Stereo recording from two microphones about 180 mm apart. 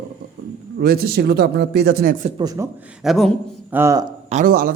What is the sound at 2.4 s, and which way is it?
Speech, 20° right (ahead or behind).